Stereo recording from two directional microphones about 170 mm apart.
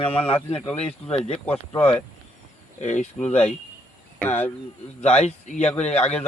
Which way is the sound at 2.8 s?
45° left (ahead or behind).